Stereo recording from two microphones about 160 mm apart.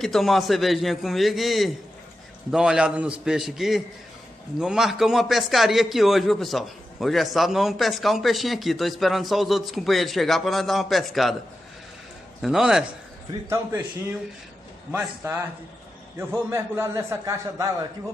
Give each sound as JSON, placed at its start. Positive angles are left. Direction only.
{"t": 0.0, "sound": "a man's voice", "side_deg": 0}
{"t": 12.4, "sound": "a man's voice", "side_deg": -5}
{"t": 14.9, "sound": "a man's voice", "side_deg": -15}